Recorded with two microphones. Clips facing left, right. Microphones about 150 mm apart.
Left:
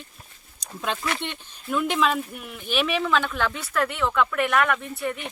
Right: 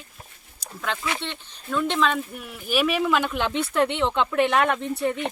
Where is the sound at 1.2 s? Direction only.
15° left (ahead or behind).